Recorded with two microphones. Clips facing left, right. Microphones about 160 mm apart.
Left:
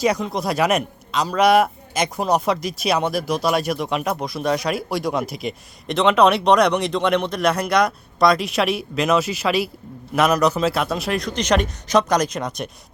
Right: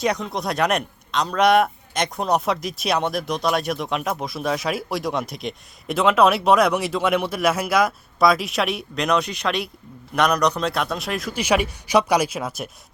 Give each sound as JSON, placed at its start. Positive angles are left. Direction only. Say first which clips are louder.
{"t": 0.0, "sound": "a man's voice", "louder": "left 3 dB", "side_deg": 0}